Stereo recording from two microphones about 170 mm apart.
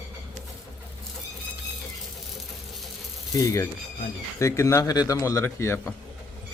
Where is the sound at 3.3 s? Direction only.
20° left (ahead or behind).